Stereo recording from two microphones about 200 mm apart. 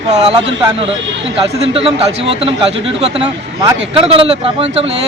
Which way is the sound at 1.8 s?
30° right (ahead or behind).